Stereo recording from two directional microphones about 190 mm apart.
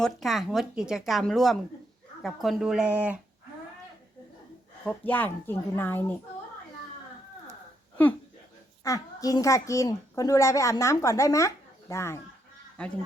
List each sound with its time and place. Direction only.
0.0 s speech: centre (ahead or behind)
4.9 s a child's voice: 10° left (ahead or behind)
8.8 s a child's voice: 20° left (ahead or behind)